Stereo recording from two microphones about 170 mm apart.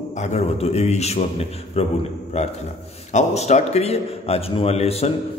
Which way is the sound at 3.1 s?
40° left (ahead or behind).